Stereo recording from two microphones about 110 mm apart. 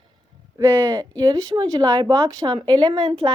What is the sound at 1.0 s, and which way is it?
A woman's voice, 35° right (ahead or behind).